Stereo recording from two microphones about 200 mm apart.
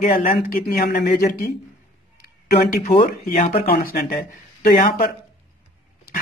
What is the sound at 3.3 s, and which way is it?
Speech, 50° left (ahead or behind).